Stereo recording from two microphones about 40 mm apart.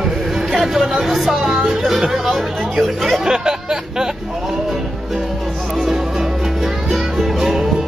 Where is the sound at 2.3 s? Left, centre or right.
Centre.